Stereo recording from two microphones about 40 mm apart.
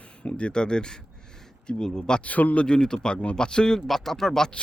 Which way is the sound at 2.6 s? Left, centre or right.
Centre.